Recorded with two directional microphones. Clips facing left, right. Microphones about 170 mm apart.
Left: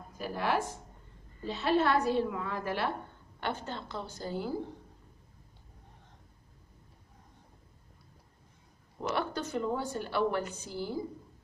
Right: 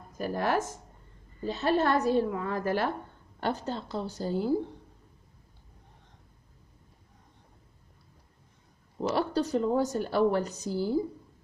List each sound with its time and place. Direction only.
0.2 s a woman's voice: 45° right (ahead or behind)
9.0 s a woman's voice: 35° right (ahead or behind)